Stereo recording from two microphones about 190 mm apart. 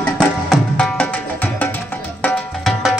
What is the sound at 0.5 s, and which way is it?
Music, 5° left (ahead or behind).